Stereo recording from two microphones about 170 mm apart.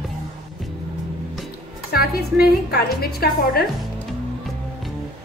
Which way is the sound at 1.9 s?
65° left (ahead or behind).